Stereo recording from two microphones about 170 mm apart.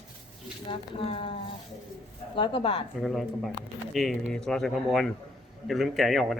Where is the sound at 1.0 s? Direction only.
35° left (ahead or behind).